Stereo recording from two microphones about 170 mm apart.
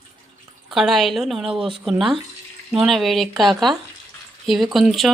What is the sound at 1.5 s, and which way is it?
Speech, 30° right (ahead or behind).